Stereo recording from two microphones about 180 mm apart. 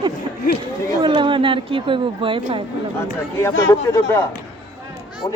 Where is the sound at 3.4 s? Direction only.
15° left (ahead or behind).